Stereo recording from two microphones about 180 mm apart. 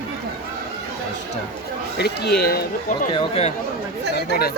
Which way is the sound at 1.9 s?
65° left (ahead or behind).